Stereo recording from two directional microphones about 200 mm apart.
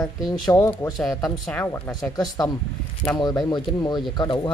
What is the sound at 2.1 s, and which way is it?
Speech, 20° left (ahead or behind).